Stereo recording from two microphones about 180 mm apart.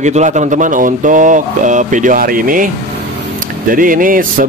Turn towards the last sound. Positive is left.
turn(degrees=-50)  # may be behind; listen again after turning